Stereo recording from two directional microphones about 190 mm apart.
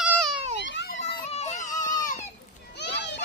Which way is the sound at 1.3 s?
35° left (ahead or behind).